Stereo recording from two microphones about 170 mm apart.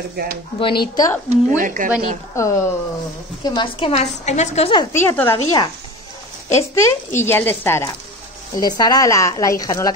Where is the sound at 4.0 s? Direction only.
40° left (ahead or behind).